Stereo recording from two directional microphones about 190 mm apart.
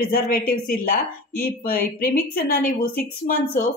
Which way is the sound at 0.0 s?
50° left (ahead or behind).